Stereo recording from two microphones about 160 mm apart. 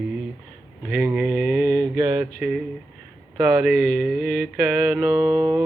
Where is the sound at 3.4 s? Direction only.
5° right (ahead or behind).